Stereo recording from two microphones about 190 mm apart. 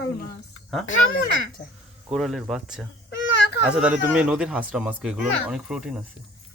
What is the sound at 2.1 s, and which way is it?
Speech, centre (ahead or behind).